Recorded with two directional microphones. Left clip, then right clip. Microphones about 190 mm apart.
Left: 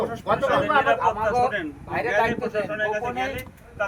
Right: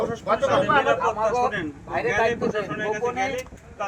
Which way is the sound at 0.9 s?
20° left (ahead or behind).